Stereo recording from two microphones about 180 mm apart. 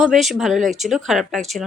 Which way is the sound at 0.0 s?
Centre (ahead or behind).